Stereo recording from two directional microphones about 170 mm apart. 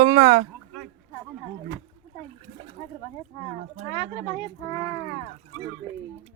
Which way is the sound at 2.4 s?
35° right (ahead or behind).